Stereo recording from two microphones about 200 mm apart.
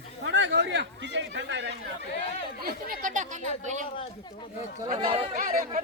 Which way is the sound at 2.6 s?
45° right (ahead or behind).